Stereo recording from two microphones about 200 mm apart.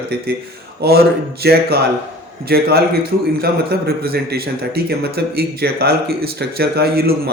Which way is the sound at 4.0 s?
50° right (ahead or behind).